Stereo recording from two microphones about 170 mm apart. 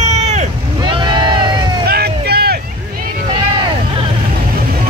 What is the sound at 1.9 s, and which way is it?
Vehicle, 70° right (ahead or behind).